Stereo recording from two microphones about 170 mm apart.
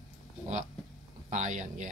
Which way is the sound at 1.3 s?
45° right (ahead or behind).